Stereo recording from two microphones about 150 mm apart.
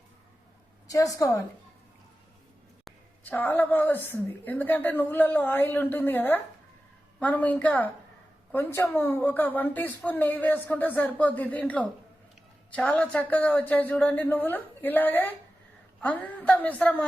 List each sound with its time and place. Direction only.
0.9 s a woman's voice: 20° left (ahead or behind)
2.8 s a woman's voice: 10° left (ahead or behind)